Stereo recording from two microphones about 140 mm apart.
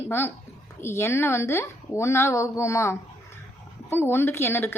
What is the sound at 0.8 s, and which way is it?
A woman's voice, 20° left (ahead or behind).